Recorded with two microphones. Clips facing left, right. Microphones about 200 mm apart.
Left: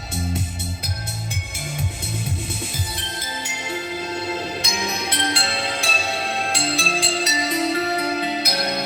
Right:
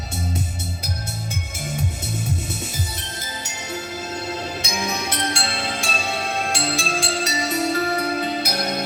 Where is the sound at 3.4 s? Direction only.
45° right (ahead or behind).